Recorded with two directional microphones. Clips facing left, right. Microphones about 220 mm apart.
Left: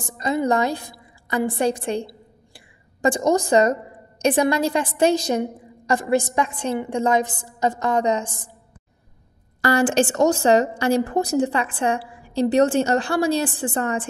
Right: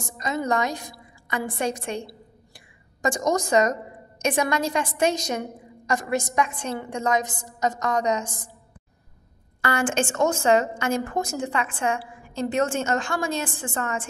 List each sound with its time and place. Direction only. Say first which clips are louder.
0.0 s a woman's voice: left 5 dB; 30° left (ahead or behind)
9.6 s a woman's voice: left 6 dB; 35° left (ahead or behind)